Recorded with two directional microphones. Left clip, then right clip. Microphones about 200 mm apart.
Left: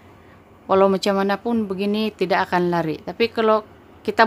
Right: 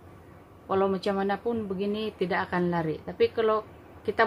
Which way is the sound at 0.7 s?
45° left (ahead or behind).